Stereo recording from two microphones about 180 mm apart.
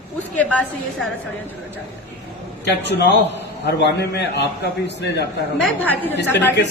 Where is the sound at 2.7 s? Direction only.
70° left (ahead or behind).